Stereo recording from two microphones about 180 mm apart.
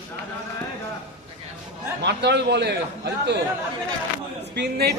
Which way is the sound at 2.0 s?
70° right (ahead or behind).